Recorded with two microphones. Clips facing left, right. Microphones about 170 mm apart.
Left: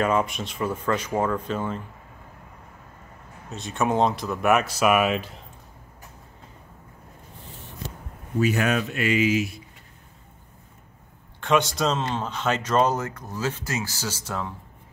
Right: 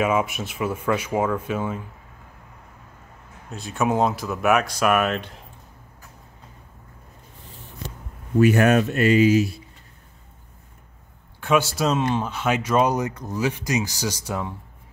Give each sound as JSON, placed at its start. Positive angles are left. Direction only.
{"t": 0.0, "sound": "speech", "side_deg": -5}
{"t": 3.4, "sound": "speech", "side_deg": 0}
{"t": 8.4, "sound": "speech", "side_deg": -50}
{"t": 11.4, "sound": "speech", "side_deg": -5}